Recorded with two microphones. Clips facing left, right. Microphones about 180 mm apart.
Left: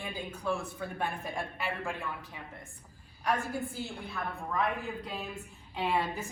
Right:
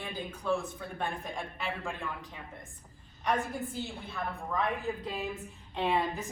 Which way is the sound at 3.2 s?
5° left (ahead or behind).